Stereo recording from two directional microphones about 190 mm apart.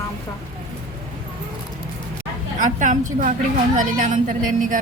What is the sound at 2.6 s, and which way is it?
A woman's voice, 45° right (ahead or behind).